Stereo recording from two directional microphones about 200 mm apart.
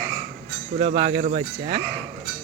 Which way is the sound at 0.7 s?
40° right (ahead or behind).